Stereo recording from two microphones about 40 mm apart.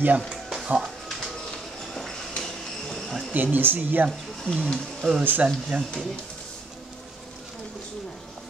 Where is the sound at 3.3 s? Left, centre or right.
Right.